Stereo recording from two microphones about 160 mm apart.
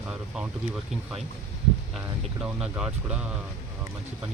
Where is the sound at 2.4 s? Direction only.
5° right (ahead or behind).